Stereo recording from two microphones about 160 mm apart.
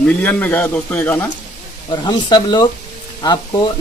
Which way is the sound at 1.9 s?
25° left (ahead or behind).